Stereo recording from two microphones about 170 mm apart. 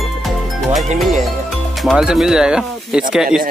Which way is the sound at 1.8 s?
Centre (ahead or behind).